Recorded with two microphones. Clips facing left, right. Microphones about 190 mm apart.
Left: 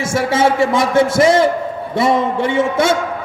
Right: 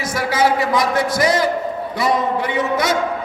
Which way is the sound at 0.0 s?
25° left (ahead or behind).